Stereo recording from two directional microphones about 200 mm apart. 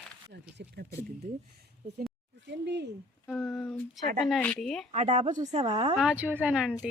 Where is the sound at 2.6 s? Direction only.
60° right (ahead or behind).